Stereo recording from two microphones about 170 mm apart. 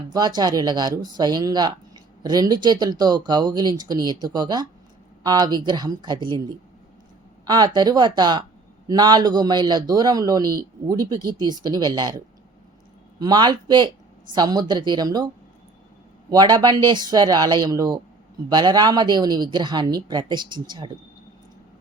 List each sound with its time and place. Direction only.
0.1 s speech: 25° right (ahead or behind)
16.3 s speech: 25° right (ahead or behind)